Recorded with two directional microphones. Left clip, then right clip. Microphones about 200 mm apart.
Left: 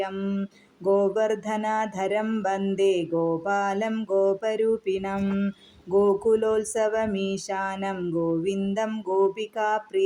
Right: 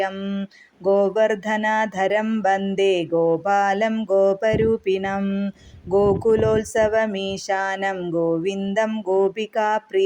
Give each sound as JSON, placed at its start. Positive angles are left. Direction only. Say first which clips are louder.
{"t": 0.0, "sound": "mantra", "louder": "right 4 dB", "side_deg": -20}